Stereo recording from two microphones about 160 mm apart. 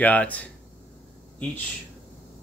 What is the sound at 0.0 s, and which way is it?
Speech, 10° left (ahead or behind).